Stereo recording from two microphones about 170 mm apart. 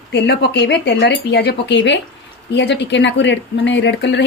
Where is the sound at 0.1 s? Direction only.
85° left.